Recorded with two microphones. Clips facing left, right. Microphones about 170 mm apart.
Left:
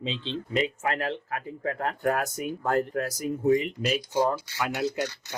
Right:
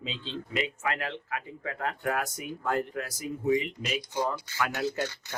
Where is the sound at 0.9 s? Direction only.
40° left (ahead or behind).